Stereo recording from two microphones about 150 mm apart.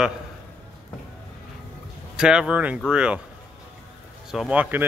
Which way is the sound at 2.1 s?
5° right (ahead or behind).